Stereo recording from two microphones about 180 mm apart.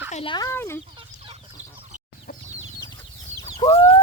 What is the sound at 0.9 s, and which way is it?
Chicken, 30° right (ahead or behind).